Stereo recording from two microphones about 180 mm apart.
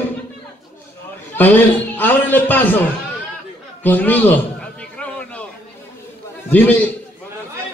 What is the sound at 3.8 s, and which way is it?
Speech, 10° left (ahead or behind).